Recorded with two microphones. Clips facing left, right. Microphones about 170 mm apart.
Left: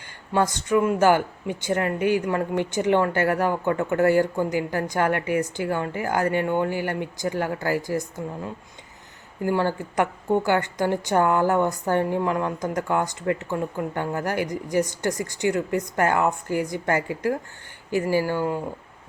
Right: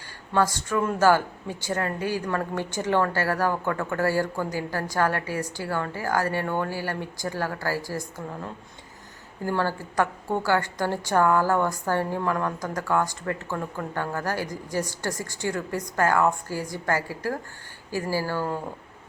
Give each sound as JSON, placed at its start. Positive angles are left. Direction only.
{"t": 0.3, "sound": "speech", "side_deg": 20}